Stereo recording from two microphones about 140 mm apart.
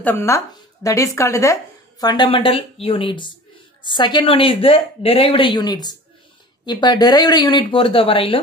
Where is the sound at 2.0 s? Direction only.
35° left (ahead or behind).